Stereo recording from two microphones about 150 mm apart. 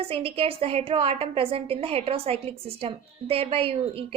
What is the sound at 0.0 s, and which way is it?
A woman's voice, 40° right (ahead or behind).